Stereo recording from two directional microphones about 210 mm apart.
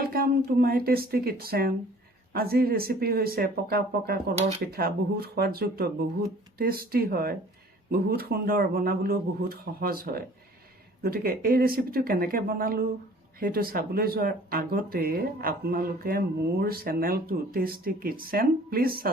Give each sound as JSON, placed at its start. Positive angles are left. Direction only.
{"t": 0.0, "sound": "speech", "side_deg": -45}